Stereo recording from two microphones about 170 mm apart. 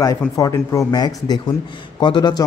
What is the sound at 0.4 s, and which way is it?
A man's voice, 20° left (ahead or behind).